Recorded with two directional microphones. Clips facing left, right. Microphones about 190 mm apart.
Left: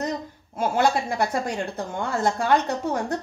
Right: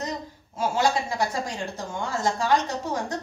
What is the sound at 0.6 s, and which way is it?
Speech, 55° left (ahead or behind).